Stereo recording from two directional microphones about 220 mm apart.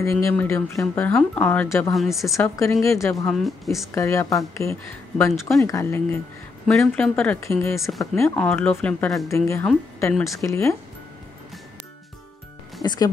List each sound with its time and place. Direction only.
0.0 s speech: 15° left (ahead or behind)
2.0 s speech: centre (ahead or behind)
2.3 s speech: 15° left (ahead or behind)
3.3 s speech: centre (ahead or behind)
3.9 s speech: 15° left (ahead or behind)
12.8 s speech: 20° left (ahead or behind)